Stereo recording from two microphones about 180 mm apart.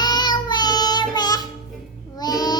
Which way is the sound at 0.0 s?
25° left (ahead or behind).